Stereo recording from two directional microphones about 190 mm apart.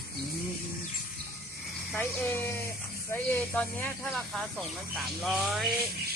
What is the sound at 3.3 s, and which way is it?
Speech, 5° left (ahead or behind).